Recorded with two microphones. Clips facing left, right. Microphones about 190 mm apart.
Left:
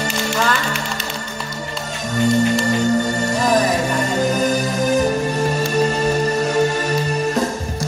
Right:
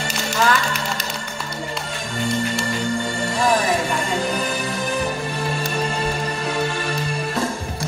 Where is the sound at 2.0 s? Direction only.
45° left (ahead or behind).